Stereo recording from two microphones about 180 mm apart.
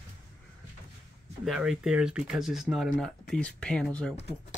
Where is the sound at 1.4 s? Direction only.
Centre (ahead or behind).